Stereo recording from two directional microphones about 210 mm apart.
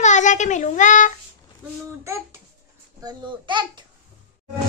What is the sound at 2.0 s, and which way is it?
A child's voice, 15° right (ahead or behind).